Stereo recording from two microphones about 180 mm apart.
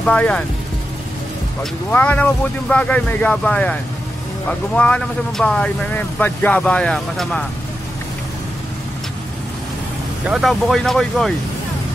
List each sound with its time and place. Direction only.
0.0 s speech: 5° left (ahead or behind)
1.6 s speech: 10° left (ahead or behind)
10.2 s speech: centre (ahead or behind)